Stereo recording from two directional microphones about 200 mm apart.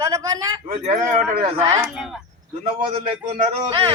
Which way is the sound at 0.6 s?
35° right (ahead or behind).